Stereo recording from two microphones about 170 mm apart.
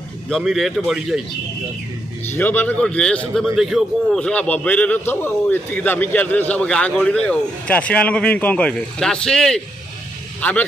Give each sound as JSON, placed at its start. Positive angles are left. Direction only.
{"t": 0.3, "sound": "a man's voice", "side_deg": 0}
{"t": 2.2, "sound": "a man's voice", "side_deg": 15}